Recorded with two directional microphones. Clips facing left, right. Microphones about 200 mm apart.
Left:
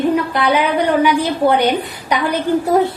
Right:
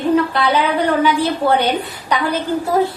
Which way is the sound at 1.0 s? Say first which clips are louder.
Left 2 dB; 15° left (ahead or behind).